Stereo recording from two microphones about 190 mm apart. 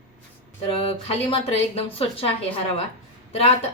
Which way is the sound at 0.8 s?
30° left (ahead or behind).